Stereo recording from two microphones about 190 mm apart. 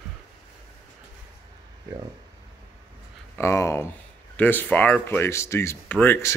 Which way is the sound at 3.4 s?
15° left (ahead or behind).